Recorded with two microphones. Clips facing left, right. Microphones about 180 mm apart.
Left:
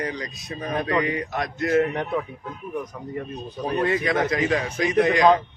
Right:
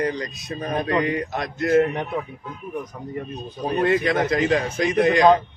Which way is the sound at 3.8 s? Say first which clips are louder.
Right 3 dB; 45° right (ahead or behind).